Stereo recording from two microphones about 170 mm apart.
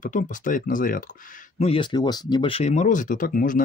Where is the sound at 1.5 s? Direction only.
35° left (ahead or behind).